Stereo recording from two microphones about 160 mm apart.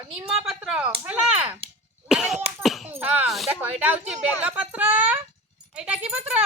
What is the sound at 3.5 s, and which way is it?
Speech, 10° right (ahead or behind).